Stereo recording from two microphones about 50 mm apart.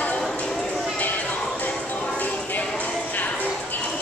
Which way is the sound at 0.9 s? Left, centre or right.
Left.